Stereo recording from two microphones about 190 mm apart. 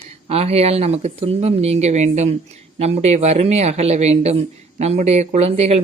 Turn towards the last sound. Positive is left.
turn(degrees=-35)  # may be behind; listen again after turning